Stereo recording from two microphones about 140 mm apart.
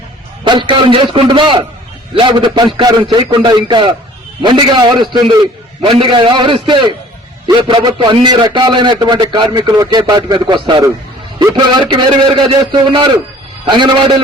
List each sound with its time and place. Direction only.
0.4 s a man's voice: 35° right (ahead or behind)